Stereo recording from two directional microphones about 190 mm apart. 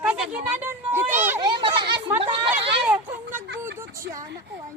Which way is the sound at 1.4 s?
25° right (ahead or behind).